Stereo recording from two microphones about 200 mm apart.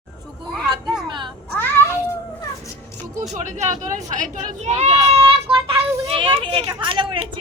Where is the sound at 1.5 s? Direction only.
10° left (ahead or behind).